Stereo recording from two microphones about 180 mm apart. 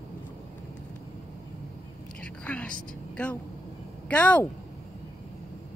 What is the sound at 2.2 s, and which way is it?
Whispering, 5° left (ahead or behind).